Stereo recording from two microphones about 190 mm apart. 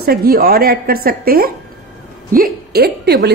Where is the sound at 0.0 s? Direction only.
55° right (ahead or behind).